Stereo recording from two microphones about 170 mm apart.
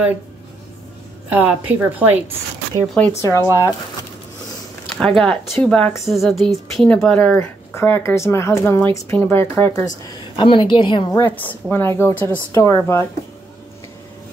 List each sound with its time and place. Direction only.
1.3 s a woman's voice: 10° right (ahead or behind)
2.7 s speech: 25° right (ahead or behind)
3.1 s a woman's voice: 15° left (ahead or behind)
4.9 s a woman's voice: 5° left (ahead or behind)
10.3 s a woman's voice: 30° left (ahead or behind)
11.1 s a woman's voice: 10° left (ahead or behind)